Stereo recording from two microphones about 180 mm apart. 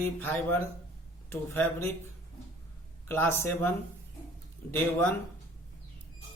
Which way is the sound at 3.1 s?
15° left (ahead or behind).